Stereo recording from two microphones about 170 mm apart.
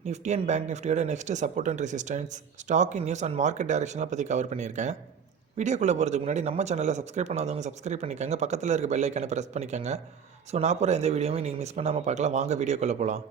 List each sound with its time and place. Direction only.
0.0 s speech: 40° right (ahead or behind)